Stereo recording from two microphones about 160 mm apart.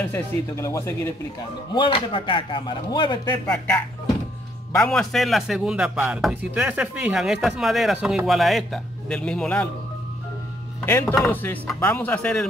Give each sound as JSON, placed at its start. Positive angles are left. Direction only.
{"t": 0.1, "sound": "speech", "side_deg": 15}
{"t": 1.7, "sound": "speech", "side_deg": 30}
{"t": 3.4, "sound": "speech", "side_deg": 15}
{"t": 10.9, "sound": "speech", "side_deg": 15}